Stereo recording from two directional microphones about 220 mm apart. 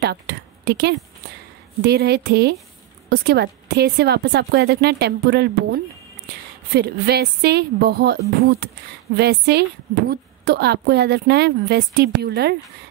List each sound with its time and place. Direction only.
0.0 s a woman's voice: 50° right (ahead or behind)